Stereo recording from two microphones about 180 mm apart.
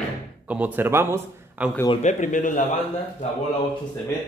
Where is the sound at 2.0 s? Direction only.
40° left (ahead or behind).